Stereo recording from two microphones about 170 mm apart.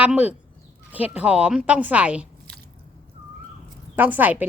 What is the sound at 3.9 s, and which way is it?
Speech, 10° right (ahead or behind).